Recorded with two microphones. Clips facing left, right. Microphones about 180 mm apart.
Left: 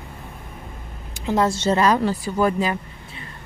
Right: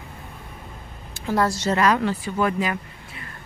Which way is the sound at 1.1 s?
20° left (ahead or behind).